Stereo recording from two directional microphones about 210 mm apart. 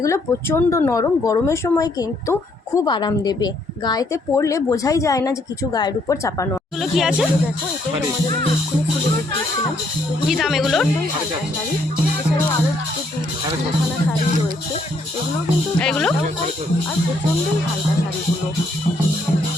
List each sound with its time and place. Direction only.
0.0 s speech: 15° left (ahead or behind)
6.7 s speech: centre (ahead or behind)
10.2 s speech: centre (ahead or behind)
15.8 s speech: 5° left (ahead or behind)